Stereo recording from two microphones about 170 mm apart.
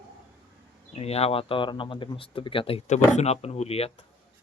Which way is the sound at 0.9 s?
35° left (ahead or behind).